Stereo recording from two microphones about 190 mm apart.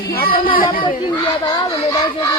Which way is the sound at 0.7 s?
25° left (ahead or behind).